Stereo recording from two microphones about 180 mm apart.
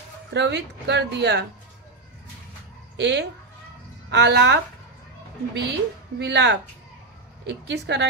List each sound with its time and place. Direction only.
0.3 s speech: 75° right (ahead or behind)
3.0 s speech: 75° right (ahead or behind)